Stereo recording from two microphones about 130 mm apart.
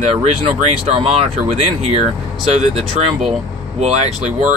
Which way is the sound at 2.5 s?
60° right (ahead or behind).